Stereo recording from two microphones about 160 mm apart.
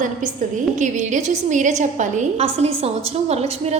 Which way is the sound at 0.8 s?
50° right (ahead or behind).